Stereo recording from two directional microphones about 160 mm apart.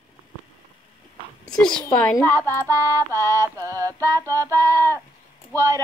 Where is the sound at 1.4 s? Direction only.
5° left (ahead or behind).